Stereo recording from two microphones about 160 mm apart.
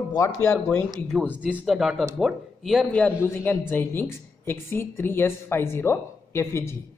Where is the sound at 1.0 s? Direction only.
5° left (ahead or behind).